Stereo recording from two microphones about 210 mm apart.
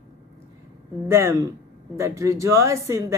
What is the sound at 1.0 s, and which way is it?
Speech, 10° right (ahead or behind).